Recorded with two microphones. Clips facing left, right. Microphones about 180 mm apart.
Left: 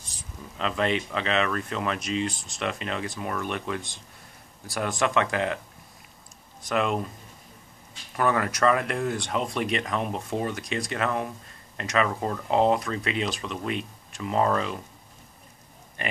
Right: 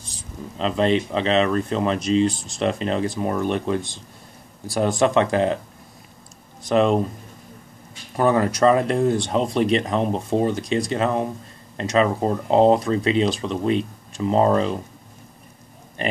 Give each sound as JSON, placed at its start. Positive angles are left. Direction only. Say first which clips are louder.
{"t": 0.6, "sound": "speech", "louder": "right 6 dB", "side_deg": -30}
{"t": 6.7, "sound": "speech", "louder": "right 8 dB", "side_deg": -30}
{"t": 8.2, "sound": "speech", "louder": "right 6 dB", "side_deg": -30}